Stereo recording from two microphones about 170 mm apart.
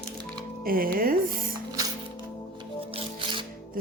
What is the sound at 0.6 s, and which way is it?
Speech, 60° right (ahead or behind).